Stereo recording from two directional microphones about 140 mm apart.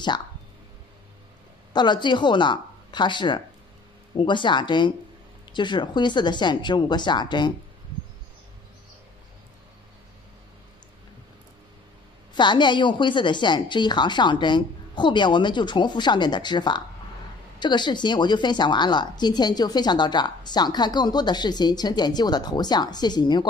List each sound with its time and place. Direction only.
1.7 s speech: 30° left (ahead or behind)
12.4 s speech: 35° left (ahead or behind)